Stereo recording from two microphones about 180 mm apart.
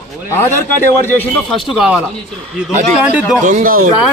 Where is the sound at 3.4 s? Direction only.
50° right (ahead or behind).